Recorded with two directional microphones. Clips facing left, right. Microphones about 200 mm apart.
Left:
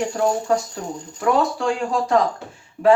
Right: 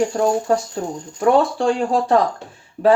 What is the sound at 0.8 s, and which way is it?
Speech, 35° right (ahead or behind).